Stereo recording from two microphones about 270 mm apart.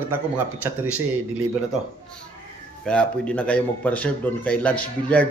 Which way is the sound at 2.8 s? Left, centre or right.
Centre.